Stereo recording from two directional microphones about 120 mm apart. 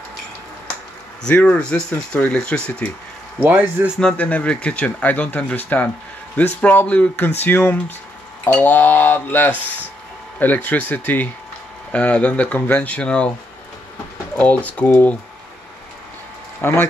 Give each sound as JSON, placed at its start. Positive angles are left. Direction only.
{"t": 1.2, "sound": "speech", "side_deg": 10}
{"t": 3.3, "sound": "speech", "side_deg": -15}
{"t": 4.0, "sound": "speech", "side_deg": 10}
{"t": 9.5, "sound": "speech", "side_deg": -15}
{"t": 10.4, "sound": "speech", "side_deg": 15}
{"t": 14.4, "sound": "speech", "side_deg": 10}
{"t": 16.6, "sound": "speech", "side_deg": 20}